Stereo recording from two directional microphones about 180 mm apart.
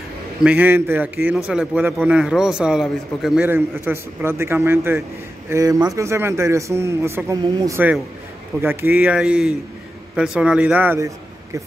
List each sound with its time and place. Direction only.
0.4 s a man's voice: 10° right (ahead or behind)